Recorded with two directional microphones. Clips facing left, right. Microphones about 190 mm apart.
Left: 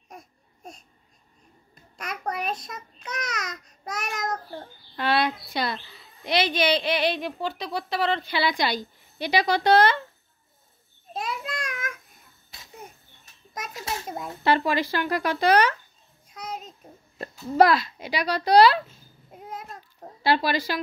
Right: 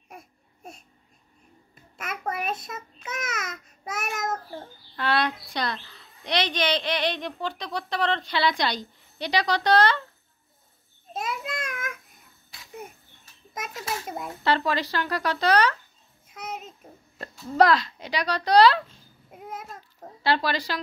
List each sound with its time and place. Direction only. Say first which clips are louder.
0.1 s a sound: even; 5° right (ahead or behind)
2.0 s babbling: even; 5° right (ahead or behind)
4.9 s a woman's voice: left 2 dB; 10° left (ahead or behind)
11.1 s child singing: even; centre (ahead or behind)
13.7 s a sound: even; 25° left (ahead or behind)
14.0 s speech: even; centre (ahead or behind)
14.4 s a woman's voice: left 2 dB; 10° left (ahead or behind)
16.3 s child singing: even; 5° right (ahead or behind)
17.2 s a child's voice: left 2 dB; 10° left (ahead or behind)
19.3 s babbling: even; centre (ahead or behind)
20.2 s a woman's voice: left 2 dB; 10° left (ahead or behind)